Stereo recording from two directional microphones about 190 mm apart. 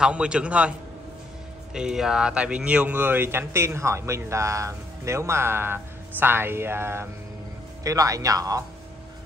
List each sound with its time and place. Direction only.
0.0 s speech: 5° right (ahead or behind)